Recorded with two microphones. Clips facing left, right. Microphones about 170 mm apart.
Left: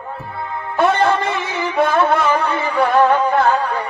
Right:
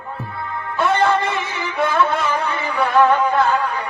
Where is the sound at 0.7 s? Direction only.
55° left (ahead or behind).